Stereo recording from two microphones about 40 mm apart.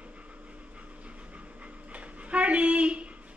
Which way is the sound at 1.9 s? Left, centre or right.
Right.